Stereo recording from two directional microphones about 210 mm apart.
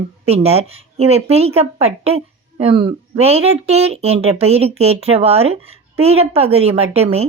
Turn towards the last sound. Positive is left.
turn(degrees=-30)  # may be behind; listen again after turning